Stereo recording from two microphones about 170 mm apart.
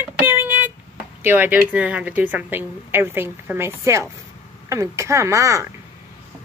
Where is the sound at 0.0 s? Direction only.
10° right (ahead or behind).